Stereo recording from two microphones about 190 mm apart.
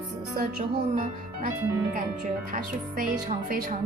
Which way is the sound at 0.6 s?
45° right (ahead or behind).